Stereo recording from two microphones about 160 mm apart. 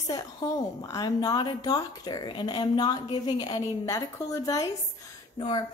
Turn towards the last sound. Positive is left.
turn(degrees=30)  # may be behind; listen again after turning